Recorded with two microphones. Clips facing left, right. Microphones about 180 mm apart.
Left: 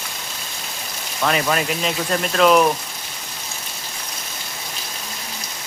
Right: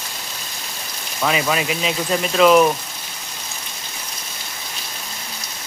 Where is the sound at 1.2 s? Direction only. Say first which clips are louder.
Even; 5° right (ahead or behind).